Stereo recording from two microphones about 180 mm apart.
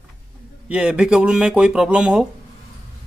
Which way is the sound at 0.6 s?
5° right (ahead or behind).